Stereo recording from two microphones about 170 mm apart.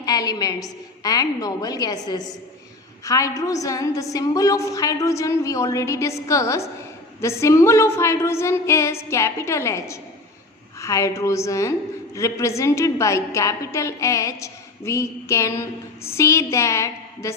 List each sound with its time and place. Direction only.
0.0 s a woman's voice: 20° left (ahead or behind)